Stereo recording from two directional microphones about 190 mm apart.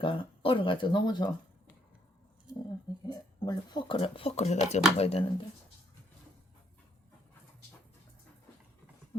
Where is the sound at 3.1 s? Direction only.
20° left (ahead or behind).